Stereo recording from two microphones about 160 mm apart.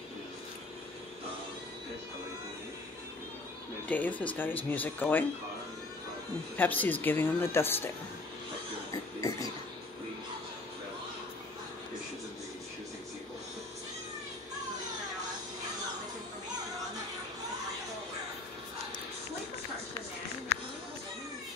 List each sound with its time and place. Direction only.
3.9 s speech: 10° left (ahead or behind)
6.5 s speech: 10° left (ahead or behind)
8.9 s a sound: 20° left (ahead or behind)